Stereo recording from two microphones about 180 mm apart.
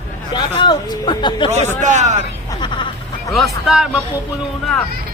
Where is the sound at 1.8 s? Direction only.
40° right (ahead or behind).